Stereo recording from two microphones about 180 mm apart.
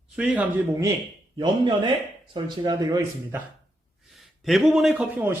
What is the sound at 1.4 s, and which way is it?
Speech, 25° right (ahead or behind).